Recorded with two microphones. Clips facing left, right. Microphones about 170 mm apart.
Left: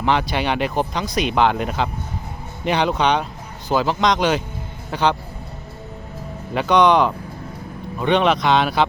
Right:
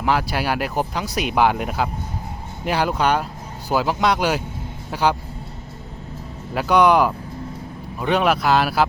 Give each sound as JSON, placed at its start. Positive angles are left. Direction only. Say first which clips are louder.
{"t": 0.0, "sound": "speech", "louder": "left 1 dB", "side_deg": -5}
{"t": 6.5, "sound": "speech", "louder": "left 1 dB", "side_deg": -5}